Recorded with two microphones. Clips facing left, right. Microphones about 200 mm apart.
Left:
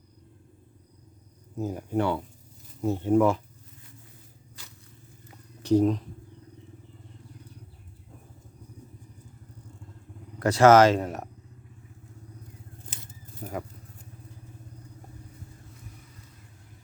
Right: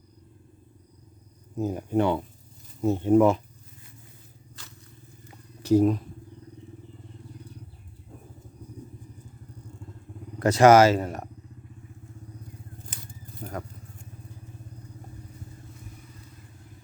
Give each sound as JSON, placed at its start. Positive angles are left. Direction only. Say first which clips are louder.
{"t": 1.5, "sound": "speech", "louder": "right 3 dB", "side_deg": -20}
{"t": 5.6, "sound": "speech", "louder": "right 1 dB", "side_deg": -10}
{"t": 10.4, "sound": "speech", "louder": "right 1 dB", "side_deg": -15}
{"t": 13.1, "sound": "a sound", "louder": "even", "side_deg": 5}